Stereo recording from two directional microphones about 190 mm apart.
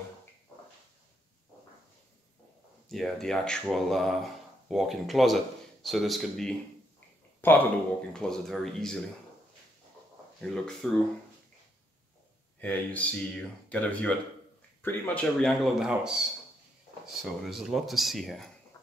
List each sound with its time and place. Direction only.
2.9 s speech: centre (ahead or behind)
10.4 s speech: 5° left (ahead or behind)
12.5 s speech: 10° left (ahead or behind)